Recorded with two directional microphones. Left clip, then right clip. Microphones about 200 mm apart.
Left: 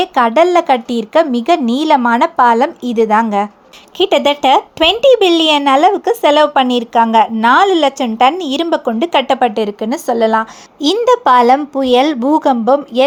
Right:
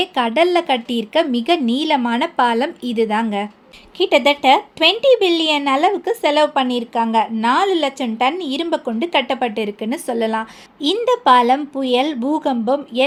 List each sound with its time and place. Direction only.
0.0 s speech: 15° left (ahead or behind)